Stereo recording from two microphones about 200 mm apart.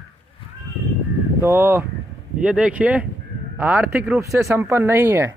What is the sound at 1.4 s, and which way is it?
Speech, 10° right (ahead or behind).